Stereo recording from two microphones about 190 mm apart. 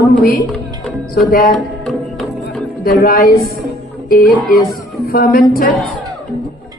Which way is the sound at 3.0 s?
50° left (ahead or behind).